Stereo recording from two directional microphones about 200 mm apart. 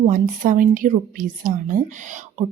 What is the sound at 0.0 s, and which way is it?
A woman's voice, 40° right (ahead or behind).